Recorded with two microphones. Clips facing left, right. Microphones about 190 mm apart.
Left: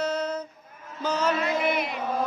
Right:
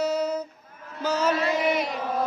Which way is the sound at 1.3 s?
35° right (ahead or behind).